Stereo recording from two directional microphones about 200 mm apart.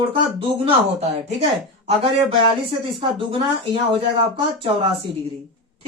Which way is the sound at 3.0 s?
25° right (ahead or behind).